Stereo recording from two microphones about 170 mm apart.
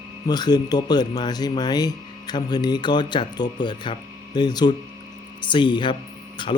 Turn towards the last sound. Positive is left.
turn(degrees=25)  # may be behind; listen again after turning